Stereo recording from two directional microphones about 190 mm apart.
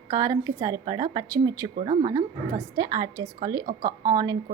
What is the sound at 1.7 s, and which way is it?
A woman's voice, 35° right (ahead or behind).